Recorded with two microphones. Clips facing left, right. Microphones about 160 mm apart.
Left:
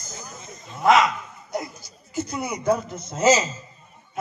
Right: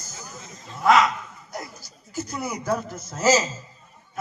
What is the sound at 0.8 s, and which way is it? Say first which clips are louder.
Speech: left 1 dB; centre (ahead or behind).